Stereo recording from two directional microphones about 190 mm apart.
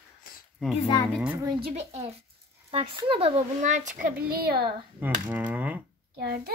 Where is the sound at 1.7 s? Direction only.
35° right (ahead or behind).